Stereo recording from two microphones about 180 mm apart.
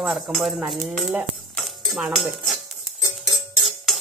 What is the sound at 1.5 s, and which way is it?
Cutlery, centre (ahead or behind).